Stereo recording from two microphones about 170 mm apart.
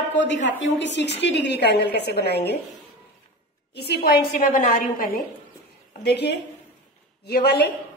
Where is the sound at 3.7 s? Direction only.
70° left (ahead or behind); by 5.2 s 55° left (ahead or behind).